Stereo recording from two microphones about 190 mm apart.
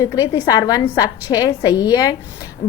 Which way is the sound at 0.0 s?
20° left (ahead or behind).